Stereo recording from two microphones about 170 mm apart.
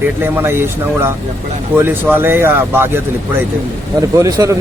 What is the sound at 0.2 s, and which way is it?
Speech, 15° right (ahead or behind).